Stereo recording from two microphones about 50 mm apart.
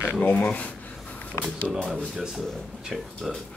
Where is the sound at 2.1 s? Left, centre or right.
Centre.